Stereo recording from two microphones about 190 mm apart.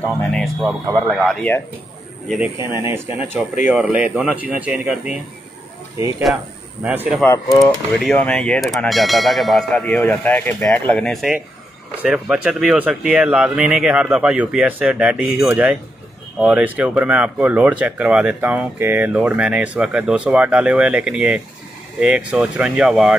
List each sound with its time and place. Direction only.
0.3 s clang: centre (ahead or behind)
2.7 s speech: 15° right (ahead or behind)
6.8 s speech: 10° right (ahead or behind)
7.2 s speech: 15° left (ahead or behind)
8.0 s clang: 5° left (ahead or behind)
15.4 s speech: 5° right (ahead or behind)
22.0 s clang: 5° right (ahead or behind)